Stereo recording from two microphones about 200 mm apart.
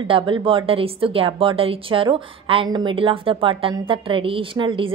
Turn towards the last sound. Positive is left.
turn(degrees=-25)  # may be behind; listen again after turning